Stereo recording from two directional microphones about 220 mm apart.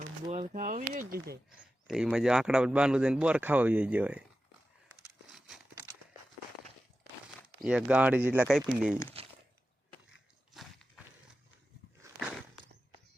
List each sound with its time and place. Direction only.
0.3 s speech: 35° right (ahead or behind)
1.9 s speech: 5° right (ahead or behind)
5.3 s a sound: centre (ahead or behind)
7.6 s speech: 5° right (ahead or behind)
9.2 s a sound: 25° right (ahead or behind)
10.5 s walk: centre (ahead or behind)